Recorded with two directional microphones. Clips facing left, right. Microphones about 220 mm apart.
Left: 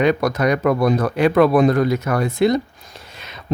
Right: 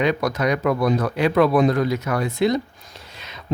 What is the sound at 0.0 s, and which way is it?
Speech, 50° left (ahead or behind).